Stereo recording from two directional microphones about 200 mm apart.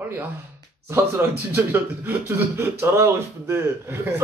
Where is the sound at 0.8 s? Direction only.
10° right (ahead or behind).